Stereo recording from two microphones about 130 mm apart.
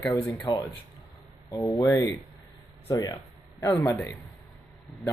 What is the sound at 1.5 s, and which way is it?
Speech, 25° left (ahead or behind).